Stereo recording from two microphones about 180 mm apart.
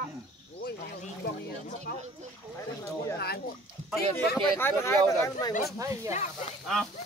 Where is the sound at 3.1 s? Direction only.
60° left (ahead or behind).